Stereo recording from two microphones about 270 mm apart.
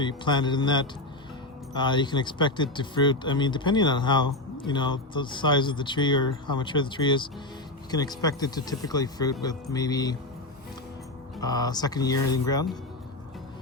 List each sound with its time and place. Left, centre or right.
0.0 s speech: centre
11.3 s speech: centre